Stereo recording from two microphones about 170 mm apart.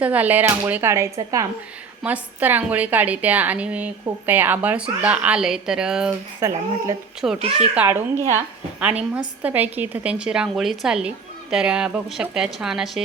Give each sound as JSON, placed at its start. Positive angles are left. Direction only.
{"t": 0.0, "sound": "a woman's voice", "side_deg": -10}
{"t": 6.4, "sound": "a woman's voice", "side_deg": -15}
{"t": 7.3, "sound": "speech", "side_deg": -35}
{"t": 7.8, "sound": "a woman's voice", "side_deg": -15}